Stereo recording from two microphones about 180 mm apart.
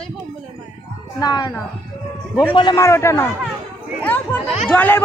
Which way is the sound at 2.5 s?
25° left (ahead or behind).